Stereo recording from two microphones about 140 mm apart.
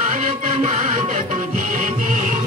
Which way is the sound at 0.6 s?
70° right (ahead or behind).